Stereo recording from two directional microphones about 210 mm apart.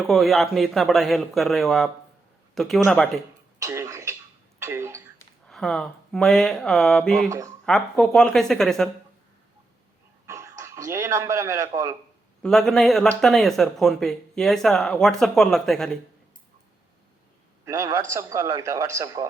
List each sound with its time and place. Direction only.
0.1 s speech: centre (ahead or behind)
3.6 s throat clearing: 15° right (ahead or behind)
4.6 s a sound: 10° right (ahead or behind)
5.5 s speech: centre (ahead or behind)
7.3 s a man's voice: 15° right (ahead or behind)
7.6 s speech: centre (ahead or behind)
10.2 s a sound: 15° right (ahead or behind)
12.4 s speech: centre (ahead or behind)
17.7 s a man's voice: 15° right (ahead or behind)